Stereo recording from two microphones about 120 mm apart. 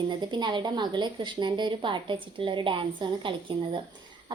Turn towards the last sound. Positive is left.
turn(degrees=-45)  # may be behind; listen again after turning